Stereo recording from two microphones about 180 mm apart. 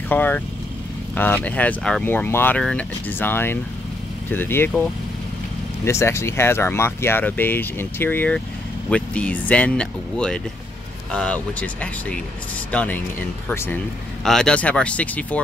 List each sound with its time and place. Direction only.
0.1 s speech: 10° left (ahead or behind)
5.9 s speech: 15° left (ahead or behind)